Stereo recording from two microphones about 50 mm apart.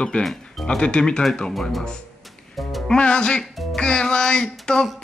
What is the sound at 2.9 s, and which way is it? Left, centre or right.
Speech, centre.